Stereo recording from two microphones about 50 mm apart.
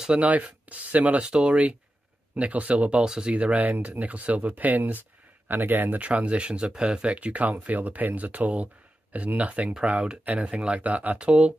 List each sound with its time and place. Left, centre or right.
0.2 s speech: right
1.2 s speech: centre; by 5.9 s right
5.9 s speech: right